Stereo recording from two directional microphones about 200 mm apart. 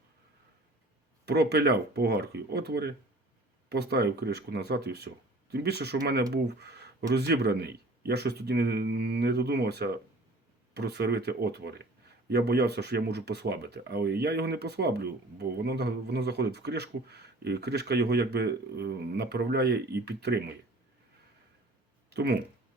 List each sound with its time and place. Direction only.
1.2 s speech: 55° right (ahead or behind)
22.1 s speech: 55° right (ahead or behind)